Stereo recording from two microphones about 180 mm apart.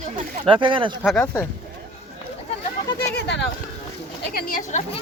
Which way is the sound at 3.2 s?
70° left (ahead or behind).